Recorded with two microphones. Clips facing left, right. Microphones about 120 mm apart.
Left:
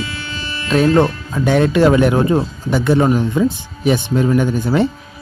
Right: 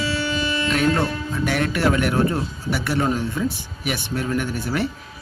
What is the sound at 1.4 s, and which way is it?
A man's voice, 20° left (ahead or behind).